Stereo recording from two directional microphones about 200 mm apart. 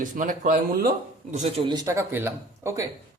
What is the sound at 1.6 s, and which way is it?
Speech, 20° right (ahead or behind).